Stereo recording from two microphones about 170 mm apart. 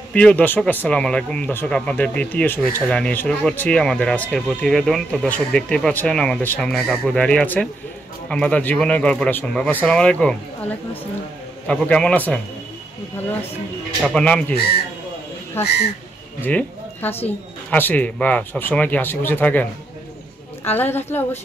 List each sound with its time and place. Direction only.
0.1 s speech: 5° left (ahead or behind)
14.0 s speech: 5° left (ahead or behind)
15.6 s speech: 15° left (ahead or behind)